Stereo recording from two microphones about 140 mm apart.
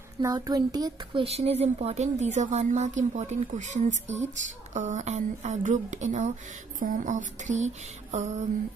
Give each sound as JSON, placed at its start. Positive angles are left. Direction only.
{"t": 0.2, "sound": "speech", "side_deg": -25}
{"t": 1.2, "sound": "a woman's voice", "side_deg": -45}